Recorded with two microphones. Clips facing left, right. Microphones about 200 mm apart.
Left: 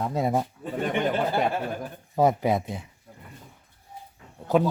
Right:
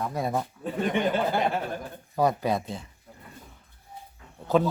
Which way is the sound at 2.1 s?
20° left (ahead or behind).